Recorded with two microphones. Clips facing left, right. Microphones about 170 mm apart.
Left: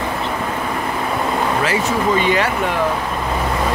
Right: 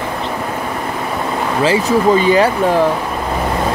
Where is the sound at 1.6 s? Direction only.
30° right (ahead or behind).